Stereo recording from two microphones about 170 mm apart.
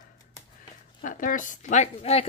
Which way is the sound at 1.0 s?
55° left (ahead or behind).